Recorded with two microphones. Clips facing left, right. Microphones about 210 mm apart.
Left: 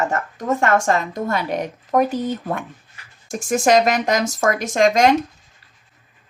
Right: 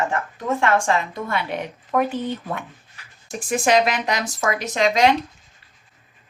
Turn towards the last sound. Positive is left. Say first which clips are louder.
# left 3 dB
turn(degrees=45)  # may be behind; listen again after turning